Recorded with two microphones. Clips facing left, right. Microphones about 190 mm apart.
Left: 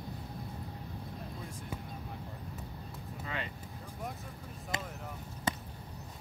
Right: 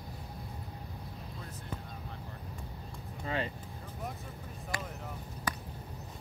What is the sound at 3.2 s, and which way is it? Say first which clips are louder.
Vehicle: right 6 dB; 35° right (ahead or behind).